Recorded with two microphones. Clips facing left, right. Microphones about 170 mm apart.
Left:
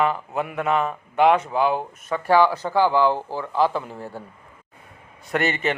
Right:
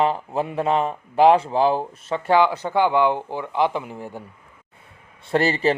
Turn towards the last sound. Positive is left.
turn(degrees=-35)  # may be behind; listen again after turning